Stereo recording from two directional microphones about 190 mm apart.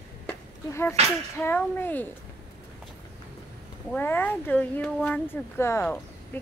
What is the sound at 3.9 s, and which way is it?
Speech, 10° left (ahead or behind).